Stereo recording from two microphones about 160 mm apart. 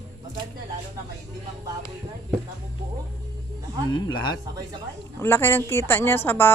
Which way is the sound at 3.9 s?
25° left (ahead or behind).